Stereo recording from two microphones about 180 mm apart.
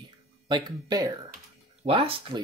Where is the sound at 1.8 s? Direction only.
30° right (ahead or behind).